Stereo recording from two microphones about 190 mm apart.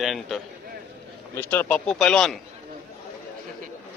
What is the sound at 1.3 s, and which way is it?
Speech, 10° left (ahead or behind).